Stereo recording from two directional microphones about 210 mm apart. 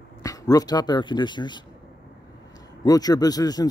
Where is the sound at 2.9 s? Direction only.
20° left (ahead or behind).